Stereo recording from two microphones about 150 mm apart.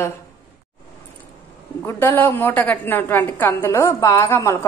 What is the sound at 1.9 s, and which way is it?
A woman's voice, 15° left (ahead or behind).